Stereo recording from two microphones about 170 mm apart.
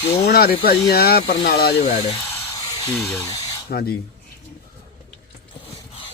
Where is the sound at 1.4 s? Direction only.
70° left (ahead or behind).